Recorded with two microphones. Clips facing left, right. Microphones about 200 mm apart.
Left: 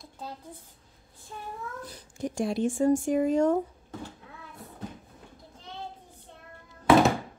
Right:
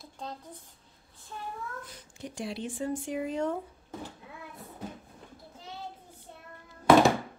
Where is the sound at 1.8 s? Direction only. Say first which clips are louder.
Left 9 dB; 45° left (ahead or behind).